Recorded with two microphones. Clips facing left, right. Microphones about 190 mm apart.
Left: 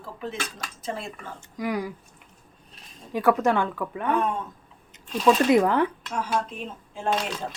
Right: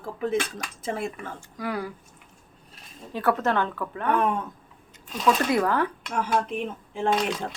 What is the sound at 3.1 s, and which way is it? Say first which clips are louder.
A woman's voice: left 3 dB; 10° left (ahead or behind).